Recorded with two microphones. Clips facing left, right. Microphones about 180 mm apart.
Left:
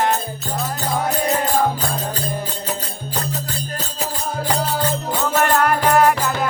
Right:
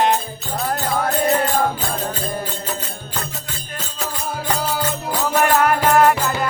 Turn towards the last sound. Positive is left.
turn(degrees=-5)  # may be behind; listen again after turning